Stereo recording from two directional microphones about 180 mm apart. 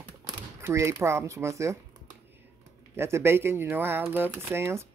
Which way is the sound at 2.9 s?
15° right (ahead or behind).